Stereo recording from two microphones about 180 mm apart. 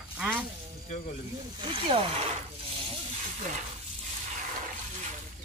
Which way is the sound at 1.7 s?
30° right (ahead or behind).